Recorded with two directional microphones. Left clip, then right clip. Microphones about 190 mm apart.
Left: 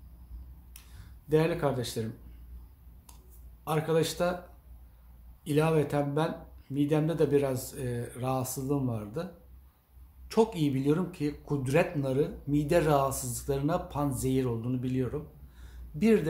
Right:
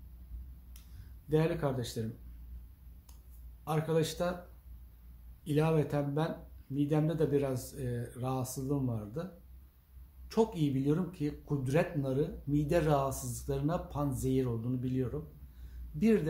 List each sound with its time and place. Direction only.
1.3 s speech: 5° left (ahead or behind)
3.6 s speech: centre (ahead or behind)
5.4 s speech: 5° left (ahead or behind)